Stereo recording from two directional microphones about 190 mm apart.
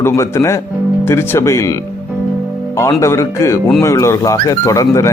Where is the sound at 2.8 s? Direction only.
15° left (ahead or behind).